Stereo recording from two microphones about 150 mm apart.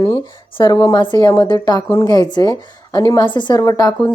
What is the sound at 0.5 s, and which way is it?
A woman's voice, 25° left (ahead or behind).